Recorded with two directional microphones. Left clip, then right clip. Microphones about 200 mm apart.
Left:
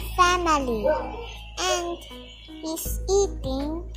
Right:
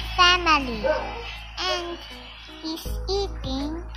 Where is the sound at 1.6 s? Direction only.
55° left (ahead or behind).